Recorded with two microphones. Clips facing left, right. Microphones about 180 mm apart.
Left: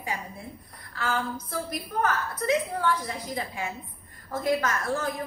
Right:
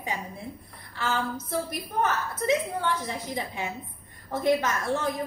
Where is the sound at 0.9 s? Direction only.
25° right (ahead or behind).